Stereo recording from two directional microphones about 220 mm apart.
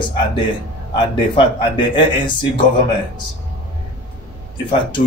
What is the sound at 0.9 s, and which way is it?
Speech, 20° left (ahead or behind).